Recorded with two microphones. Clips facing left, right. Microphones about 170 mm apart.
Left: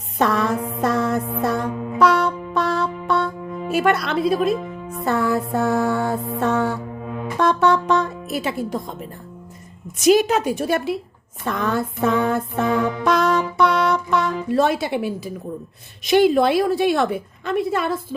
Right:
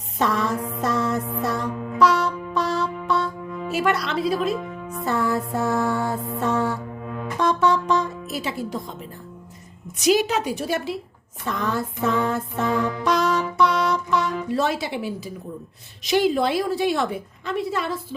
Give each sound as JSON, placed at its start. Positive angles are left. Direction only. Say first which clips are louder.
{"t": 0.2, "sound": "music", "louder": "left 3 dB", "side_deg": 60}
{"t": 3.7, "sound": "a woman's voice", "louder": "left 4 dB", "side_deg": 55}
{"t": 5.0, "sound": "music", "louder": "left 3 dB", "side_deg": 60}
{"t": 7.1, "sound": "music", "louder": "left 2 dB", "side_deg": 15}
{"t": 7.3, "sound": "music", "louder": "left 3 dB", "side_deg": 60}
{"t": 10.0, "sound": "a woman's voice", "louder": "left 4 dB", "side_deg": 50}
{"t": 12.6, "sound": "music", "louder": "left 2 dB", "side_deg": 20}
{"t": 13.1, "sound": "music", "louder": "left 3 dB", "side_deg": 55}
{"t": 14.5, "sound": "a woman's voice", "louder": "left 6 dB", "side_deg": 55}